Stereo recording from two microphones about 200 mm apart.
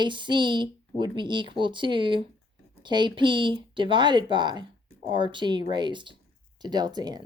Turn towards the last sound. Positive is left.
turn(degrees=-20)  # may be behind; listen again after turning